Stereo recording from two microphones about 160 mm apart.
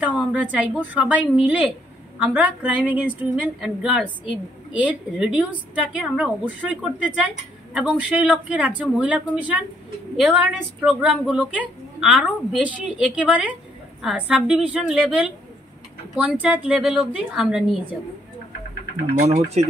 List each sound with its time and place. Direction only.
0.0 s a woman's voice: 10° right (ahead or behind)
19.6 s speech: 45° right (ahead or behind)